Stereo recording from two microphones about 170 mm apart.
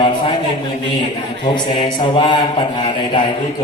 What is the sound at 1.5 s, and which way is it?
Mantra, 30° left (ahead or behind).